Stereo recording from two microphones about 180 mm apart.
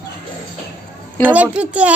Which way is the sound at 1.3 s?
10° right (ahead or behind).